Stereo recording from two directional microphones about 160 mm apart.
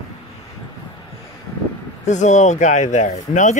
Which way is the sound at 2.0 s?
50° left (ahead or behind).